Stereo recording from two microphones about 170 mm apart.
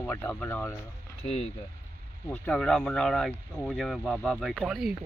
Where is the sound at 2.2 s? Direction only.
10° left (ahead or behind).